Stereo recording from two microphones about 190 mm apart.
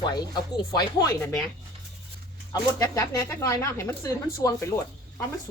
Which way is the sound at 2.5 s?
15° left (ahead or behind).